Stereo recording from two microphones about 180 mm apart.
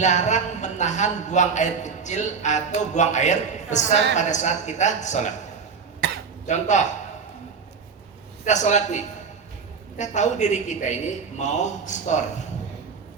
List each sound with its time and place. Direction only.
0.0 s a man's voice: 40° left (ahead or behind)
6.5 s a man's voice: 40° left (ahead or behind)
8.4 s a man's voice: 40° left (ahead or behind)